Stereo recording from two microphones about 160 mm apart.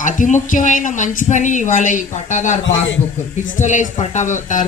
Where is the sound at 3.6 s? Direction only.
50° left (ahead or behind).